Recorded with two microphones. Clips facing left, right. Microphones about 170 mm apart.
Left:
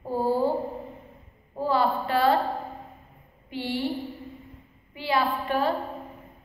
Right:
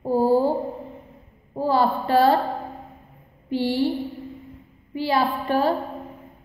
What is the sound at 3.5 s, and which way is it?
Speech, 35° right (ahead or behind).